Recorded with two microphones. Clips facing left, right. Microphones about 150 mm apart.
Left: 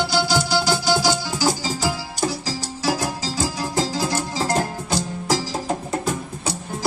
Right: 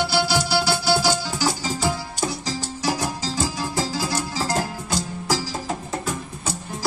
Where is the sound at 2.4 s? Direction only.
5° left (ahead or behind).